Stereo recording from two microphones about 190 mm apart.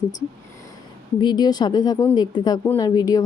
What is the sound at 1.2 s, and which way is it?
A woman's voice, 20° left (ahead or behind).